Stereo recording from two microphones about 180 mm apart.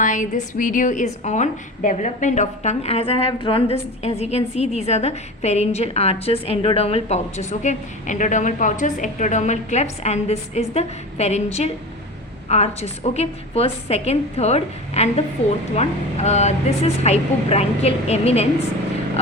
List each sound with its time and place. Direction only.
0.0 s a woman's voice: 45° left (ahead or behind)